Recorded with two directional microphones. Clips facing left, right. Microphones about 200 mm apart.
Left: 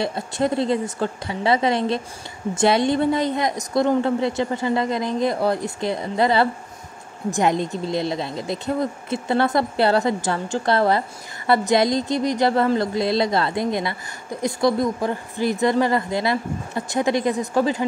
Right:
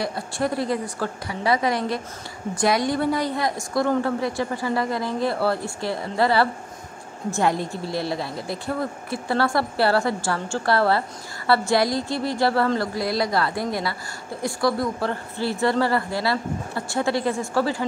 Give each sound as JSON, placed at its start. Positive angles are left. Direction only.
{"t": 0.0, "sound": "speech", "side_deg": 25}